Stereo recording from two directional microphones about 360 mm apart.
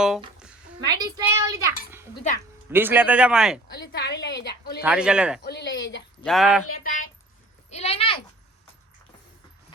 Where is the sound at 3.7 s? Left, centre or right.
Left.